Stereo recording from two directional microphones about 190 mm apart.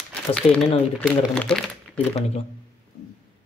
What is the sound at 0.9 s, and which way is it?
Speech, 5° left (ahead or behind).